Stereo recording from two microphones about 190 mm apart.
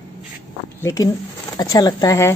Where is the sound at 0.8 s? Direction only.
15° left (ahead or behind).